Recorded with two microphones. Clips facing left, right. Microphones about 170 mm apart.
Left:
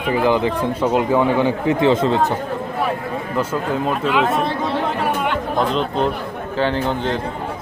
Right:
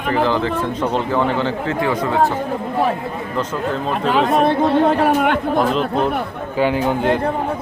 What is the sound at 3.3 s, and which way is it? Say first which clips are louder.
Speech: left 1 dB; 10° left (ahead or behind).